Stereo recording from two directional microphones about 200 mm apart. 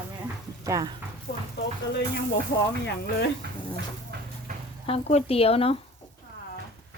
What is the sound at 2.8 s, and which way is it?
Speech, 60° left (ahead or behind).